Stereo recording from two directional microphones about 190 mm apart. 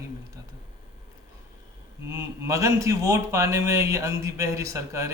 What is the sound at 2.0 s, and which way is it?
A man's voice, 15° right (ahead or behind).